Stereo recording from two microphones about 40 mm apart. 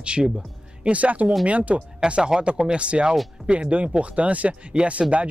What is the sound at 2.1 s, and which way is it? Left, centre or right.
Speech, right.